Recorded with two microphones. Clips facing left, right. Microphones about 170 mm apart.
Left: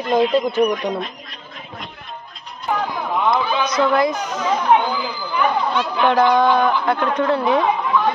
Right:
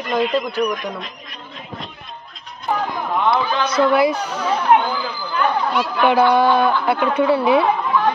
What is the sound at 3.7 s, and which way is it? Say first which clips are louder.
A man's voice: right 3 dB; 10° right (ahead or behind).